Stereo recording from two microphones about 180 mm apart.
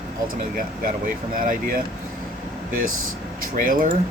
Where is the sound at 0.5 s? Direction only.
50° right (ahead or behind).